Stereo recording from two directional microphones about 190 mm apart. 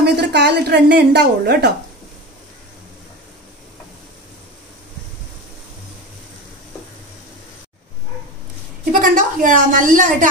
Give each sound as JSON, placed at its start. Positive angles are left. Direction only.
{"t": 0.0, "sound": "a woman's voice", "side_deg": -60}
{"t": 9.0, "sound": "a woman's voice", "side_deg": -45}